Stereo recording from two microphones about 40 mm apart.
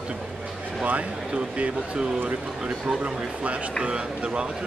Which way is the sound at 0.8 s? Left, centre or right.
Right.